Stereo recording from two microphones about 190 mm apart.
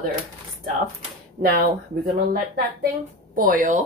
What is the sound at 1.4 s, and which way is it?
Speech, 55° right (ahead or behind).